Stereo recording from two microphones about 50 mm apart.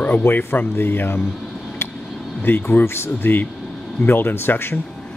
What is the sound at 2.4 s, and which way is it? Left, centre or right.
Speech, left.